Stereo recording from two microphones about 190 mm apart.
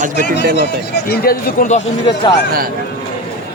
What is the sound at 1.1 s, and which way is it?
Speech, 50° left (ahead or behind).